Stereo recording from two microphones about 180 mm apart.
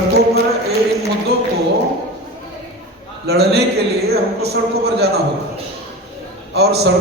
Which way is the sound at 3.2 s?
65° right (ahead or behind).